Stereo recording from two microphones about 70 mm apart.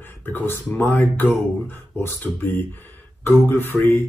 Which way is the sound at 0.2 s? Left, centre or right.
Left.